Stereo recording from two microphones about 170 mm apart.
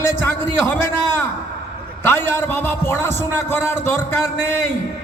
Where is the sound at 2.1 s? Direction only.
10° left (ahead or behind).